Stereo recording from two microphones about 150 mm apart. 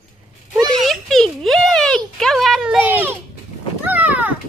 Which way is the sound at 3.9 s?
10° right (ahead or behind).